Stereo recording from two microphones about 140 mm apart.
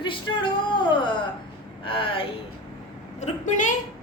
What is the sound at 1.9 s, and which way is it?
Speech, 40° left (ahead or behind).